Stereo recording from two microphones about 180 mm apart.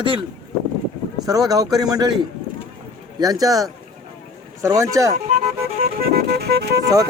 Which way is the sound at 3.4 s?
20° right (ahead or behind).